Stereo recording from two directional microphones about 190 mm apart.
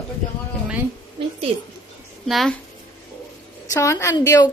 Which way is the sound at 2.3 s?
Centre (ahead or behind).